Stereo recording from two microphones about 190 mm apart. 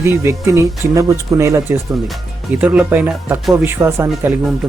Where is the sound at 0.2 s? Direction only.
15° right (ahead or behind).